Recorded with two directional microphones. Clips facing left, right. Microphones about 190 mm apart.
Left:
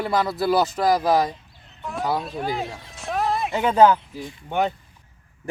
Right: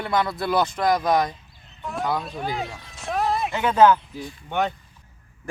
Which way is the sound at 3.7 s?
35° left (ahead or behind).